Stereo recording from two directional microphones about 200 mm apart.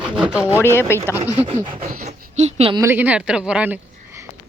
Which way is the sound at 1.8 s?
45° right (ahead or behind).